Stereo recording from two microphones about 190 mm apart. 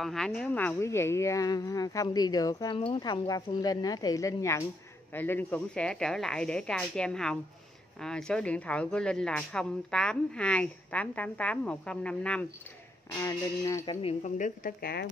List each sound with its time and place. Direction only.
0.0 s speech: centre (ahead or behind)
13.2 s speech: 15° left (ahead or behind)
14.0 s a woman's voice: 40° left (ahead or behind)